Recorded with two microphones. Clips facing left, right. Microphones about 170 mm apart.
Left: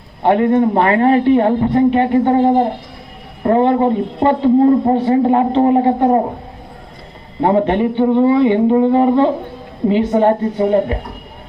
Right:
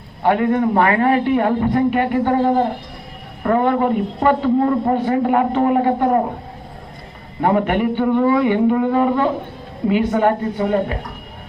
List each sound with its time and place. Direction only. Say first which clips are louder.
0.2 s a man's voice: left 4 dB; 25° left (ahead or behind)
7.4 s a man's voice: left 3 dB; 25° left (ahead or behind)